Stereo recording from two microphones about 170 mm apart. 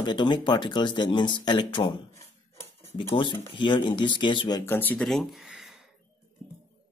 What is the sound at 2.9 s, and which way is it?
Speech, 30° left (ahead or behind).